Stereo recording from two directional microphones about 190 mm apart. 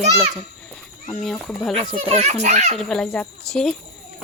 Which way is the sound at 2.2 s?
35° right (ahead or behind).